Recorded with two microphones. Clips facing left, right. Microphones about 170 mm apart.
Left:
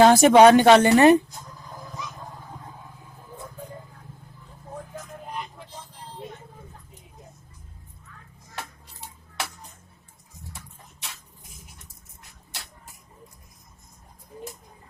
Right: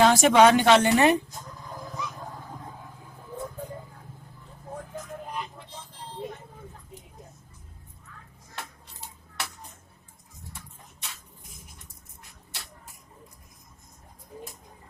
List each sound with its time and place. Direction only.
0.0 s speech: 40° left (ahead or behind)